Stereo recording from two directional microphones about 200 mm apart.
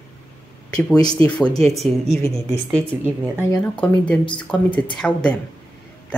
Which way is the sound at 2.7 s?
10° right (ahead or behind).